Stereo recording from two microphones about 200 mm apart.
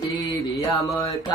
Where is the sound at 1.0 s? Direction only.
20° left (ahead or behind).